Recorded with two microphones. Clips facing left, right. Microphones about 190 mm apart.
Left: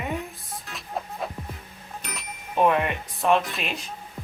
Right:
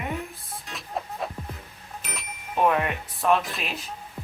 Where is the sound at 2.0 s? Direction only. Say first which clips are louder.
Right 1 dB; centre (ahead or behind).